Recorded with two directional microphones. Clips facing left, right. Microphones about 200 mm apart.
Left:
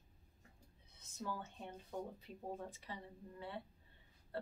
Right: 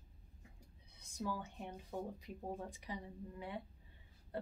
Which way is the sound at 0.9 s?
15° right (ahead or behind).